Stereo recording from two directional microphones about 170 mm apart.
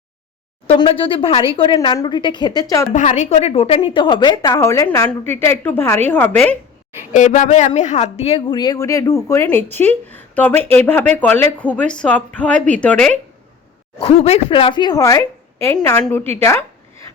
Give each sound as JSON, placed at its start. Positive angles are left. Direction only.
{"t": 0.8, "sound": "a woman's voice", "side_deg": 30}
{"t": 2.9, "sound": "a woman's voice", "side_deg": 45}
{"t": 7.1, "sound": "speech", "side_deg": 45}
{"t": 14.0, "sound": "a woman's voice", "side_deg": 35}
{"t": 16.3, "sound": "speech", "side_deg": 15}